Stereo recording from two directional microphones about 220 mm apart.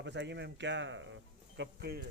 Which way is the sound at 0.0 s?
50° right (ahead or behind).